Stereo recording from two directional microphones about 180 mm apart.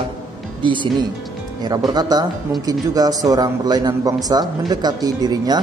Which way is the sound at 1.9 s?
20° right (ahead or behind).